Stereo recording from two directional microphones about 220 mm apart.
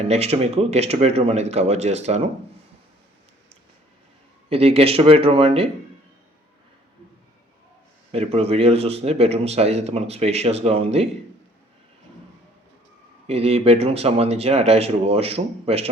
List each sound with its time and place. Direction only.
0.0 s a man's voice: 30° right (ahead or behind)
4.4 s a man's voice: 25° right (ahead or behind)
8.1 s a man's voice: 30° right (ahead or behind)
13.2 s a man's voice: 25° right (ahead or behind)